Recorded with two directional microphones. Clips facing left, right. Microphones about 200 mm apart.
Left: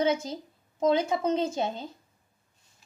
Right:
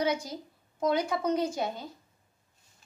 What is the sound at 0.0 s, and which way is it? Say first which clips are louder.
Speech: left 3 dB; 25° left (ahead or behind).